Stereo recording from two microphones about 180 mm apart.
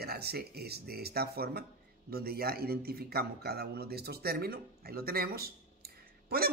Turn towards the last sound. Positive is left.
turn(degrees=-60)  # may be behind; listen again after turning